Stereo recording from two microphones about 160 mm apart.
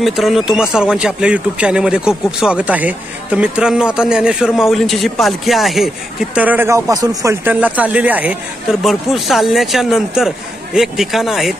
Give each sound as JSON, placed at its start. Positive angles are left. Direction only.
{"t": 0.0, "sound": "speech", "side_deg": 0}
{"t": 7.4, "sound": "speech", "side_deg": -10}